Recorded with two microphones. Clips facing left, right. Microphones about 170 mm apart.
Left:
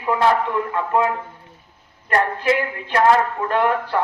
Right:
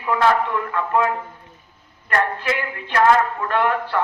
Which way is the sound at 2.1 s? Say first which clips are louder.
Left 3 dB; 30° left (ahead or behind).